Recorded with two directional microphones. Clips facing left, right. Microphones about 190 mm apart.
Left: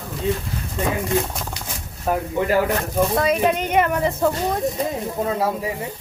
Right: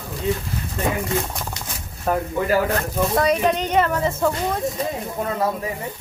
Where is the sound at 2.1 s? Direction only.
5° left (ahead or behind).